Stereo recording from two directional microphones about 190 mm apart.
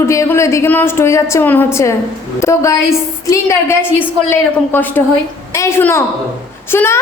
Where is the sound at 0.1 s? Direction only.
15° left (ahead or behind).